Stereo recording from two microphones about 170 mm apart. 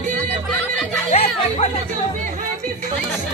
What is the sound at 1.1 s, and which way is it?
Music, 35° left (ahead or behind).